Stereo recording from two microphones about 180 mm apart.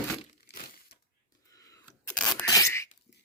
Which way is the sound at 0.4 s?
60° left (ahead or behind).